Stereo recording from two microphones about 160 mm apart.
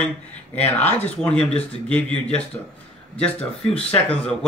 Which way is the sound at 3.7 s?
10° left (ahead or behind).